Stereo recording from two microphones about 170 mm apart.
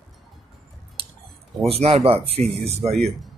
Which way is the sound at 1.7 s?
35° right (ahead or behind).